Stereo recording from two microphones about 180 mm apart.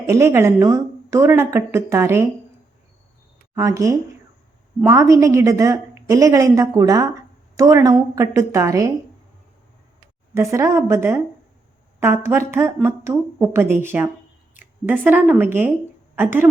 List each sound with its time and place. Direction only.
0.0 s a woman's voice: 15° right (ahead or behind)
3.5 s a woman's voice: 20° right (ahead or behind)
10.3 s a woman's voice: 15° right (ahead or behind)